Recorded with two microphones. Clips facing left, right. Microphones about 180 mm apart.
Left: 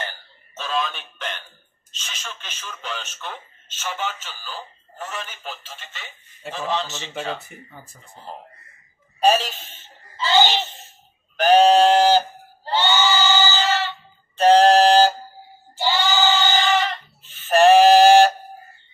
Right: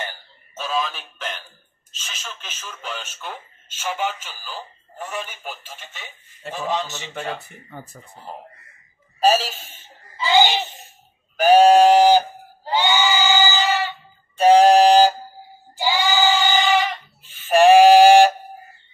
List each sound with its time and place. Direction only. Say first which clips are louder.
0.6 s a sound: right 1 dB; 5° right (ahead or behind)
1.9 s a man's voice: even; 5° right (ahead or behind)
7.7 s speech: right 6 dB; 60° right (ahead or behind)
9.2 s speech: even; 5° right (ahead or behind)
11.3 s goat: right 2 dB; 10° right (ahead or behind)
15.7 s a sound: right 1 dB; 10° right (ahead or behind)